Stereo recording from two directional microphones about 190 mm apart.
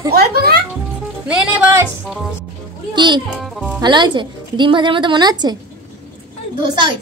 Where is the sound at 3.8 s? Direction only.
25° right (ahead or behind).